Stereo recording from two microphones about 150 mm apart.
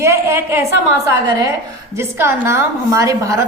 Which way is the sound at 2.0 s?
15° right (ahead or behind).